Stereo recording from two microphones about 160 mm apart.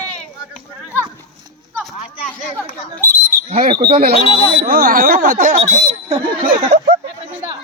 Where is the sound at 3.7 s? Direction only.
30° right (ahead or behind).